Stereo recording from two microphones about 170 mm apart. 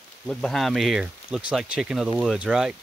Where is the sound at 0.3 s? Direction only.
Centre (ahead or behind).